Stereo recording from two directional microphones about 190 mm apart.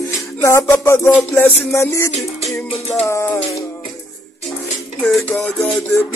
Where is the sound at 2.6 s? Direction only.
35° left (ahead or behind).